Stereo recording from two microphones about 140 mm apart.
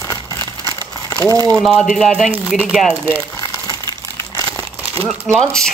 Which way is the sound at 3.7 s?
25° left (ahead or behind).